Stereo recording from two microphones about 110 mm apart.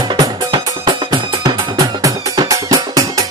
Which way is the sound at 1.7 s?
35° right (ahead or behind).